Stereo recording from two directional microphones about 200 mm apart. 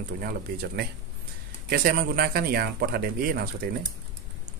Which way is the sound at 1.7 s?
45° right (ahead or behind).